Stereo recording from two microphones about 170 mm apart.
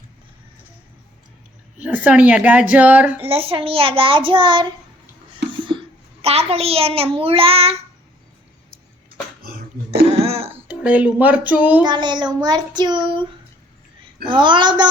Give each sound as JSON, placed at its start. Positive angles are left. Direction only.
{"t": 1.8, "sound": "a woman's voice", "side_deg": -10}
{"t": 3.2, "sound": "child singing", "side_deg": -35}
{"t": 6.2, "sound": "child singing", "side_deg": -35}
{"t": 9.9, "sound": "cough", "side_deg": -35}
{"t": 10.7, "sound": "a woman's voice", "side_deg": -10}
{"t": 11.9, "sound": "child singing", "side_deg": -25}
{"t": 14.3, "sound": "child singing", "side_deg": -30}